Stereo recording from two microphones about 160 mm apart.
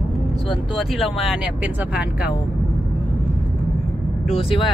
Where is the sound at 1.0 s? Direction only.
Centre (ahead or behind).